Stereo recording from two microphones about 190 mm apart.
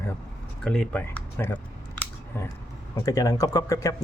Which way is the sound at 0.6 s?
5° left (ahead or behind).